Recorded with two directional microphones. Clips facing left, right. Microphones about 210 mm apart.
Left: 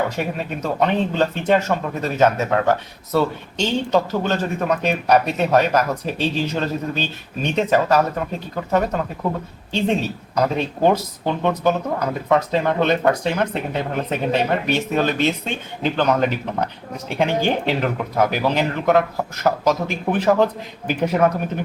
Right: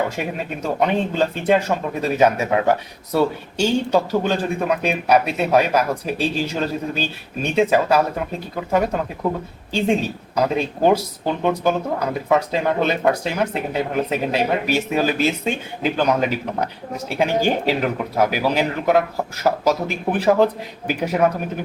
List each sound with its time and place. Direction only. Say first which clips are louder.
0.6 s speech: even; 10° right (ahead or behind)